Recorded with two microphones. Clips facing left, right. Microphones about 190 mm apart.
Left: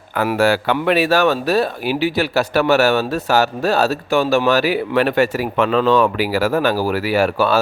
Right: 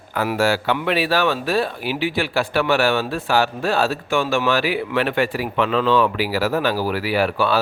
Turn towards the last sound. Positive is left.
turn(degrees=45)  # may be behind; listen again after turning